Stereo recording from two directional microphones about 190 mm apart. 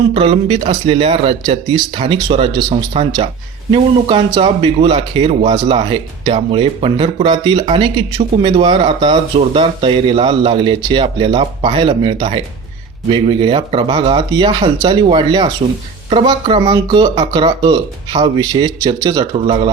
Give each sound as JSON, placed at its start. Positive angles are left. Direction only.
{"t": 0.1, "sound": "speech", "side_deg": -30}